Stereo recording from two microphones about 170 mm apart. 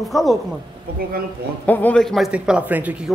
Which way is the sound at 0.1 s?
Centre (ahead or behind).